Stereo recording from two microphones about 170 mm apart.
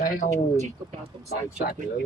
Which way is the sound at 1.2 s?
65° left (ahead or behind).